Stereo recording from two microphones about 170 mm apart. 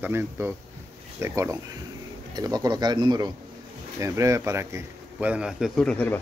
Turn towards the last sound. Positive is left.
turn(degrees=10)  # may be behind; listen again after turning